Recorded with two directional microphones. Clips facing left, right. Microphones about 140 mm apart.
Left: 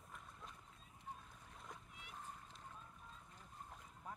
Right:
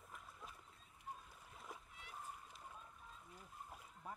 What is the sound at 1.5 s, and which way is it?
Boat, 5° right (ahead or behind).